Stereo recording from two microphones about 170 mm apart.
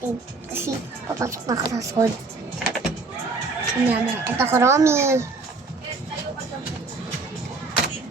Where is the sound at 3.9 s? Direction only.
15° right (ahead or behind).